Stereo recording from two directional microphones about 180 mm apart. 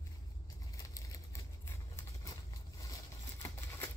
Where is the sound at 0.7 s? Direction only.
20° left (ahead or behind).